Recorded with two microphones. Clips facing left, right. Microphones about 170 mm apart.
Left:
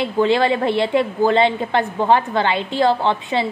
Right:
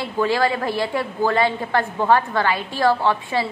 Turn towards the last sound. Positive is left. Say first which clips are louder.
# left 1 dB
turn(degrees=20)  # may be behind; listen again after turning